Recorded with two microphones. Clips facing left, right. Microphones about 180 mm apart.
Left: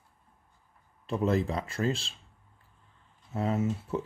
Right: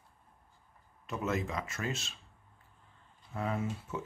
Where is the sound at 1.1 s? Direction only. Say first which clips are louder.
Left 7 dB; 35° left (ahead or behind).